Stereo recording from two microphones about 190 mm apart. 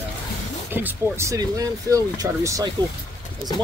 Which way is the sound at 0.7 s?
10° right (ahead or behind).